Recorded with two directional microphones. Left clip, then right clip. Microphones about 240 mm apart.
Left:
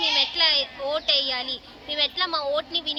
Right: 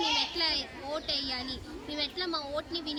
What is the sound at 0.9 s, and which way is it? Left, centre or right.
A woman's voice, centre.